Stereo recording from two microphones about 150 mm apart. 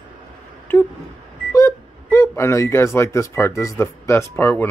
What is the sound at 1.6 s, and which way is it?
Speech, 20° left (ahead or behind).